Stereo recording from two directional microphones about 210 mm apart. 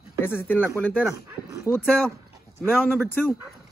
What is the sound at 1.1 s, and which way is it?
Speech, 15° right (ahead or behind).